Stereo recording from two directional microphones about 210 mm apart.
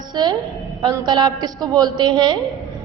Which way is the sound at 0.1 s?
20° right (ahead or behind).